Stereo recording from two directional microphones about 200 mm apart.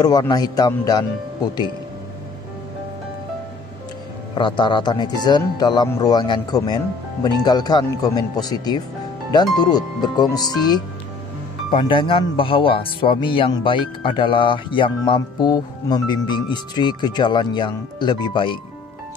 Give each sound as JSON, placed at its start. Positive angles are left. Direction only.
{"t": 0.0, "sound": "speech", "side_deg": 20}
{"t": 4.4, "sound": "speech", "side_deg": 25}